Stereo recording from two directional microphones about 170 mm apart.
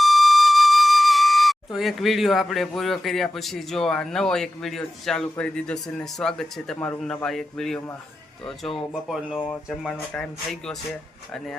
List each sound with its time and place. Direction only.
0.0 s a man's voice: centre (ahead or behind)